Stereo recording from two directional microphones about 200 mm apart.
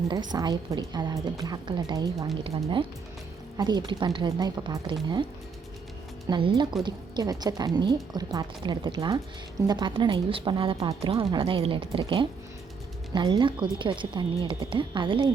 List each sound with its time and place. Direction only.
0.3 s a woman's voice: 20° right (ahead or behind)